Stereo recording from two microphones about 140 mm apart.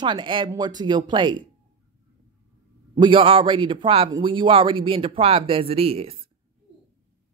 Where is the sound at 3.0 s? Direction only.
40° right (ahead or behind).